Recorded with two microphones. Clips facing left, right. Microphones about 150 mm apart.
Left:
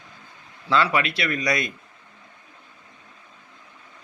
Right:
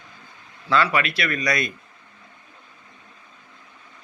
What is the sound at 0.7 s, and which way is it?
Speech, 25° left (ahead or behind).